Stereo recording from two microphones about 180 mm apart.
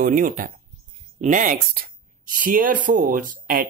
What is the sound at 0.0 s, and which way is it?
Speech, 50° right (ahead or behind).